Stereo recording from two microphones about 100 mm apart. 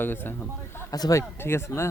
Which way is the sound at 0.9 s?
35° left (ahead or behind).